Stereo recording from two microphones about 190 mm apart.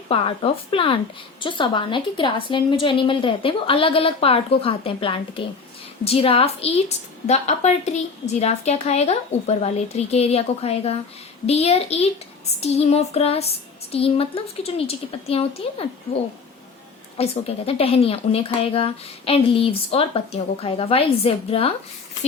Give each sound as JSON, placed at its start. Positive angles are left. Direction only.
{"t": 0.1, "sound": "a woman's voice", "side_deg": 30}
{"t": 17.2, "sound": "a woman's voice", "side_deg": 30}